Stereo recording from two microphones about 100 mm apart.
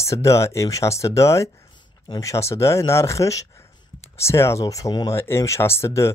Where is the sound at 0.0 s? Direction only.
30° left (ahead or behind).